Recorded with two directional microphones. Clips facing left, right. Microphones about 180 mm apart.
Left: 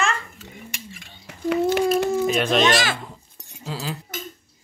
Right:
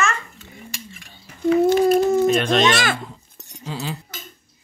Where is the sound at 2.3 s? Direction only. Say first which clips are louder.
Right 2 dB; 5° left (ahead or behind).